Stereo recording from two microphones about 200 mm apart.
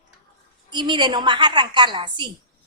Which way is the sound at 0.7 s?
20° right (ahead or behind).